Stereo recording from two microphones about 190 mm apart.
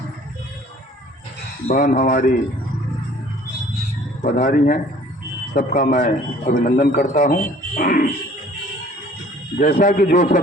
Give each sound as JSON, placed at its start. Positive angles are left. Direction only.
{"t": 1.6, "sound": "a man's voice", "side_deg": 45}
{"t": 4.2, "sound": "a man's voice", "side_deg": 50}
{"t": 9.6, "sound": "a man's voice", "side_deg": 45}